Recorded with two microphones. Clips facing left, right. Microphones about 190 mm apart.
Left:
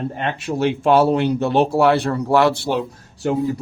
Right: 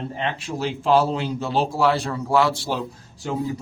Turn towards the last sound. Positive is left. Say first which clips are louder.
# left 6 dB
turn(degrees=65)  # may be behind; listen again after turning